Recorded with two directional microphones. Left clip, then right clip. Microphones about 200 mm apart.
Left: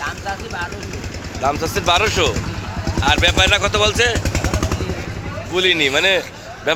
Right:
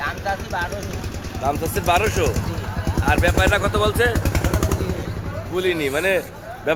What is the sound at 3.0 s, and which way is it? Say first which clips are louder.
Speech: left 4 dB; 15° left (ahead or behind).